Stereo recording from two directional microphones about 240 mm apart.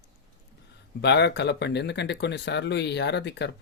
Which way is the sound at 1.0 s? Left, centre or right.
Left.